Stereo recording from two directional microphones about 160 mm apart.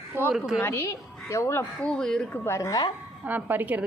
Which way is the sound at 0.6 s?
15° left (ahead or behind).